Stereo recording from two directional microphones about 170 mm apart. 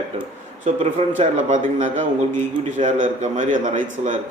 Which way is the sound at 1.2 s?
45° right (ahead or behind).